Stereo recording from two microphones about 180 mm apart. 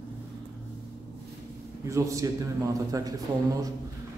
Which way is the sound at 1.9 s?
15° right (ahead or behind).